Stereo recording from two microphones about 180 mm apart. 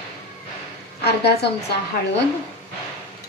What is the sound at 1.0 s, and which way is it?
Speech, 65° left (ahead or behind).